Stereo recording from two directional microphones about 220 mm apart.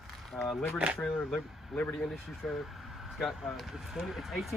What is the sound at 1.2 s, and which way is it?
Speech, 5° left (ahead or behind).